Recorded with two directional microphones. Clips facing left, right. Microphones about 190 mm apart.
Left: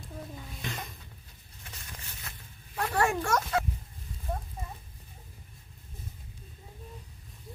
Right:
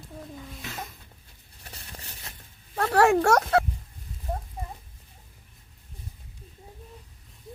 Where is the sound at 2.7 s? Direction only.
65° right (ahead or behind).